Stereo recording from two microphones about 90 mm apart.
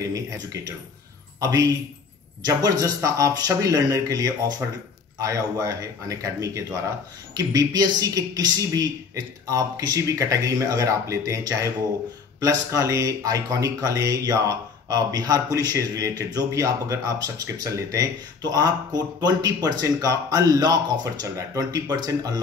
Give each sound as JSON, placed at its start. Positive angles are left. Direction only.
{"t": 0.0, "sound": "speech", "side_deg": -40}